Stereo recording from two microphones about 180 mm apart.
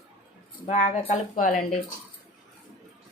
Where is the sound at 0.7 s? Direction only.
40° left (ahead or behind).